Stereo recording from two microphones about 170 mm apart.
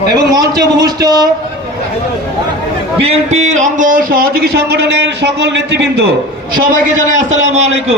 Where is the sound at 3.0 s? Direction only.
40° right (ahead or behind); by 6.0 s 90° right.